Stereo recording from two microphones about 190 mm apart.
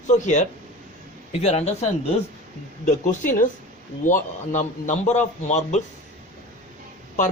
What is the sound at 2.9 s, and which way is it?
Speech, 45° left (ahead or behind).